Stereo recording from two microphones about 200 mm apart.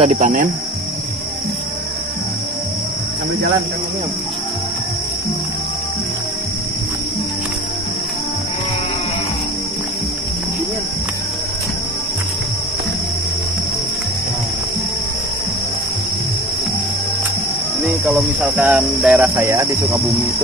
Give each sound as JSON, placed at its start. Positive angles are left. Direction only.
{"t": 0.0, "sound": "speech", "side_deg": -35}
{"t": 17.8, "sound": "cricket", "side_deg": -5}